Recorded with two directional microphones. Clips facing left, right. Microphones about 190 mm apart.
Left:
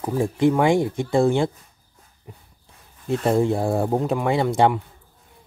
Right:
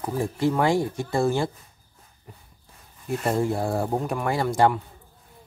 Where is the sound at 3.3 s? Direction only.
20° left (ahead or behind).